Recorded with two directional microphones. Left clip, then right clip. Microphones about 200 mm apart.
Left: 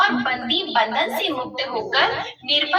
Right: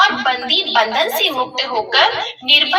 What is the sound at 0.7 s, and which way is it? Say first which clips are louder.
Speech: right 3 dB; 50° right (ahead or behind).